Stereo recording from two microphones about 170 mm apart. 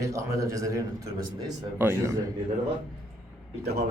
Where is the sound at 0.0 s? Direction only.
20° right (ahead or behind).